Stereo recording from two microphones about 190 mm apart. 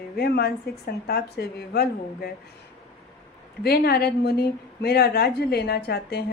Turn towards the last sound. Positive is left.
turn(degrees=55)  # may be behind; listen again after turning